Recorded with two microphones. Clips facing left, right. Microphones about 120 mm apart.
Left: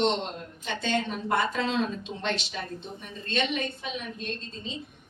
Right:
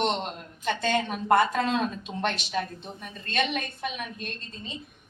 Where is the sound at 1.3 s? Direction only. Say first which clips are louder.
Right 5 dB; 50° right (ahead or behind).